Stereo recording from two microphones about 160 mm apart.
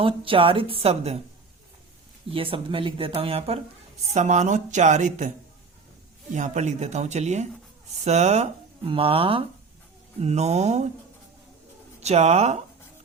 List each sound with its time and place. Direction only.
0.0 s speech: 35° right (ahead or behind)
2.3 s a woman's voice: 35° right (ahead or behind); by 5.3 s 50° right (ahead or behind)
6.3 s a woman's voice: 50° right (ahead or behind)
11.9 s speech: 45° right (ahead or behind)